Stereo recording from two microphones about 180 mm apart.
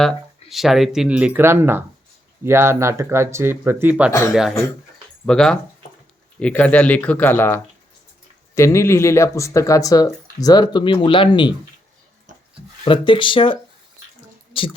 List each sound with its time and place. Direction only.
0.0 s speech: centre (ahead or behind)
5.2 s speech: 5° left (ahead or behind); by 11.5 s 25° left (ahead or behind)
12.8 s speech: 25° left (ahead or behind)